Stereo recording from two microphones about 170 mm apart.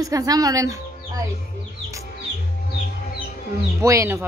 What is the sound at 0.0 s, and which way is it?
Speech, 20° right (ahead or behind).